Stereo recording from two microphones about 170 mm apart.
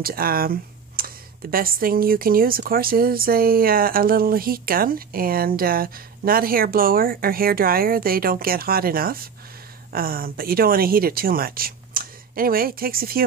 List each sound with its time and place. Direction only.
0.0 s speech: 60° right (ahead or behind)